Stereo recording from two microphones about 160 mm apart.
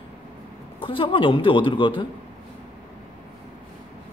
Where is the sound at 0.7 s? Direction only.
35° left (ahead or behind).